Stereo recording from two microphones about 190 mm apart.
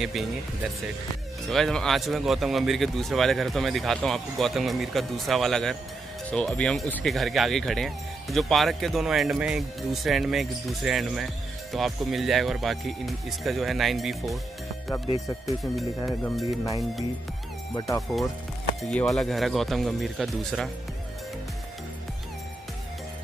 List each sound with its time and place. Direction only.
0.0 s speech: centre (ahead or behind)
1.5 s speech: centre (ahead or behind)
17.7 s speech: 15° left (ahead or behind)
18.8 s speech: centre (ahead or behind)